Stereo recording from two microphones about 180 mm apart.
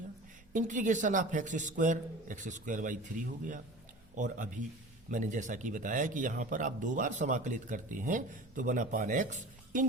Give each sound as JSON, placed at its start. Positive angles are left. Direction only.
{"t": 0.5, "sound": "speech", "side_deg": -45}
{"t": 4.1, "sound": "speech", "side_deg": -45}